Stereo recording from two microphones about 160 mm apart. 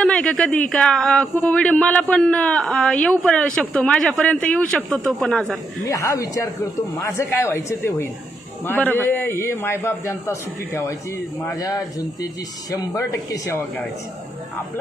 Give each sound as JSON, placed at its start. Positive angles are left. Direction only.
{"t": 0.0, "sound": "a man's voice", "side_deg": 5}
{"t": 5.9, "sound": "a man's voice", "side_deg": 20}